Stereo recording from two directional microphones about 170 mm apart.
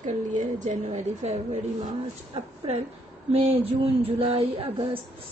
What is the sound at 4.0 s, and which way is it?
Speech, 35° right (ahead or behind).